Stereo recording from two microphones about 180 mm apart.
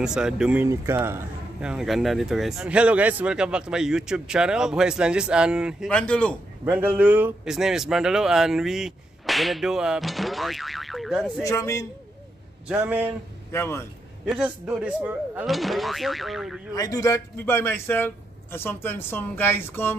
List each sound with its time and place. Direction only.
0.0 s a man's voice: 5° right (ahead or behind)
6.6 s a man's voice: 10° right (ahead or behind)
11.4 s a man's voice: 15° left (ahead or behind)
12.6 s a man's voice: 10° right (ahead or behind)
13.5 s a man's voice: 15° left (ahead or behind)
14.2 s a man's voice: 5° right (ahead or behind)
16.7 s a man's voice: 20° left (ahead or behind)